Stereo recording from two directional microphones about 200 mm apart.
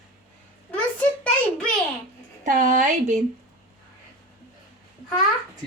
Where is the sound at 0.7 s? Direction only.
5° left (ahead or behind).